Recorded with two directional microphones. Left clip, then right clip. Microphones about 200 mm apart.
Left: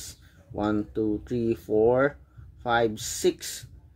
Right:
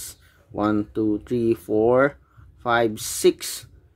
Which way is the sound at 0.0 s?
25° right (ahead or behind).